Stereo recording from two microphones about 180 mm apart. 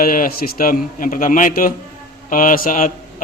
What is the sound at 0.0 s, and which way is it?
A man's voice, 50° left (ahead or behind).